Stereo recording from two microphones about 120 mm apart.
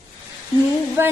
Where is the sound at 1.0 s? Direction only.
20° right (ahead or behind).